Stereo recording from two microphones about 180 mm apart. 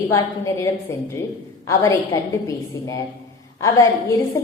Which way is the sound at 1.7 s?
15° left (ahead or behind).